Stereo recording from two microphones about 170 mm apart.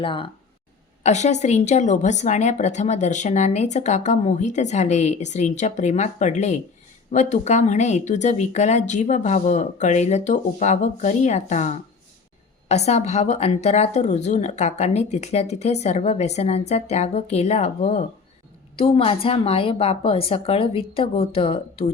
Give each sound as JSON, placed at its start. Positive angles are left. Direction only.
{"t": 0.0, "sound": "speech", "side_deg": 30}
{"t": 1.0, "sound": "a woman's voice", "side_deg": 45}